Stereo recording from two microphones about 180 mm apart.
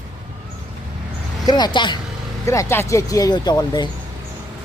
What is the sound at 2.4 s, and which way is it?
Speech, 15° left (ahead or behind).